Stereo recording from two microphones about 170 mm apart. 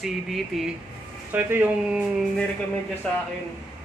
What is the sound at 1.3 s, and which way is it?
Speech, 10° right (ahead or behind).